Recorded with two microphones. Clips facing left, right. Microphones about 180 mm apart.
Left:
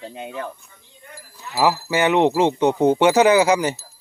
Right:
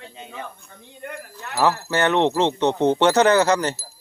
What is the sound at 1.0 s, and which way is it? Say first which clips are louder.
Livestock: right 6 dB; 65° right (ahead or behind).